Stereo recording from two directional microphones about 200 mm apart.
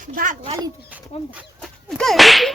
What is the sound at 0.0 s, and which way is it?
Speech, 40° right (ahead or behind).